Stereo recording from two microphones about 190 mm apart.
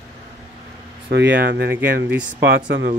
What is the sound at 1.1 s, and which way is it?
Speech, 65° right (ahead or behind).